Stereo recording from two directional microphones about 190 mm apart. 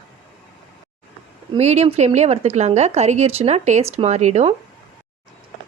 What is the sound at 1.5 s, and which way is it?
A woman's voice, 35° right (ahead or behind).